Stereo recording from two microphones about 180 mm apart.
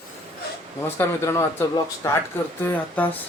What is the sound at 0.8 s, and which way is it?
Speech, 15° left (ahead or behind).